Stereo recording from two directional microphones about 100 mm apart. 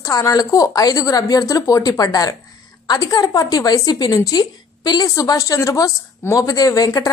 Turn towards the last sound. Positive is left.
turn(degrees=40)  # may be behind; listen again after turning